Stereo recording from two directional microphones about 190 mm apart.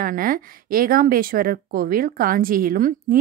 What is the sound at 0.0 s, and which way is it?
Speech, 45° right (ahead or behind).